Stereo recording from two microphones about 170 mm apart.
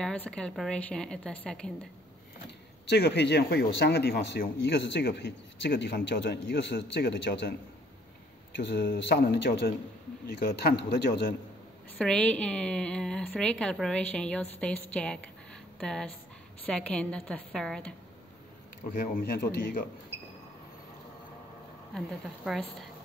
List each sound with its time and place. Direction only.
0.0 s a woman's voice: 5° left (ahead or behind)
2.9 s speech: 80° left
8.5 s speech: 85° left
10.2 s a man's voice: 65° left (ahead or behind)
12.0 s a woman's voice: 5° left (ahead or behind)
19.1 s a man's voice: 65° left (ahead or behind)
21.9 s a woman's voice: centre (ahead or behind)